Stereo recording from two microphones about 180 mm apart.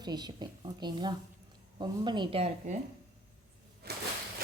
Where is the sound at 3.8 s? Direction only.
60° right (ahead or behind).